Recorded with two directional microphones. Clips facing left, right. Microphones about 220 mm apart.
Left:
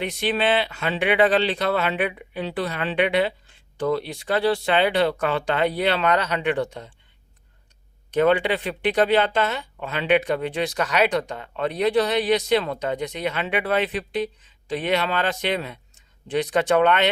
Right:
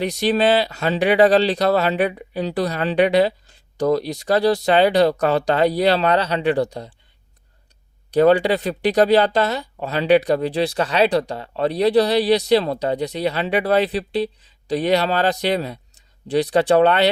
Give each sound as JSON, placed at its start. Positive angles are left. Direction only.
{"t": 0.0, "sound": "speech", "side_deg": -40}
{"t": 8.1, "sound": "speech", "side_deg": -35}